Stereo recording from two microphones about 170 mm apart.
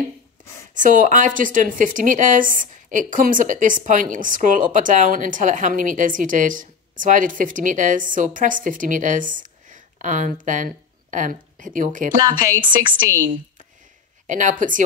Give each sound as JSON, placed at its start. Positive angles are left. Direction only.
{"t": 0.7, "sound": "speech", "side_deg": -50}
{"t": 12.2, "sound": "speech", "side_deg": -20}
{"t": 14.2, "sound": "speech", "side_deg": -50}